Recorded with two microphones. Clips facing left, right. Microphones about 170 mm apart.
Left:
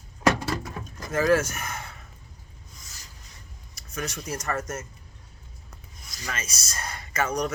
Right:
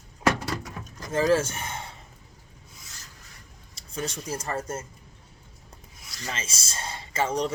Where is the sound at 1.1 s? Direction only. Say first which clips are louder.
Even; 30° right (ahead or behind).